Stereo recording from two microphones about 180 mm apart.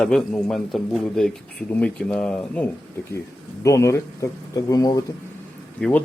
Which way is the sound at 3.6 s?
15° left (ahead or behind).